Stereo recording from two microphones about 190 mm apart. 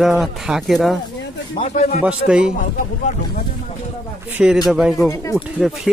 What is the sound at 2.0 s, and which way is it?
Speech, 5° right (ahead or behind).